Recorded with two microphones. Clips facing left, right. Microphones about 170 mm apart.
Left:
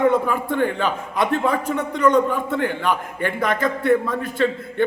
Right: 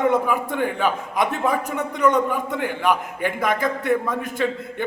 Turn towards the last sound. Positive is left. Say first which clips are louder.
# left 4 dB
turn(degrees=-10)  # may be behind; listen again after turning